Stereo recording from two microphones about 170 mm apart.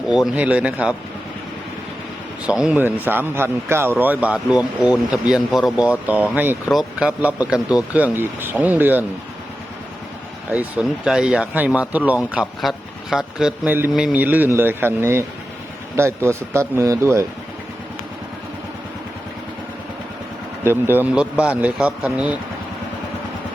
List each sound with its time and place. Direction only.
0.1 s speech: 5° right (ahead or behind)
2.5 s speech: 5° right (ahead or behind)
10.5 s speech: 5° right (ahead or behind)
20.7 s speech: 10° right (ahead or behind)